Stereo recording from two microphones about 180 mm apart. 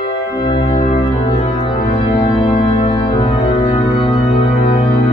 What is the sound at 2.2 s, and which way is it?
Music, 30° left (ahead or behind).